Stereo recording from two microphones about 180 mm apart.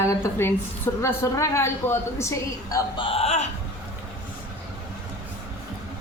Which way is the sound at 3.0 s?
30° left (ahead or behind).